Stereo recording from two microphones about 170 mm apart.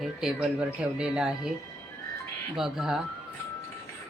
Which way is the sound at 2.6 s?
Centre (ahead or behind).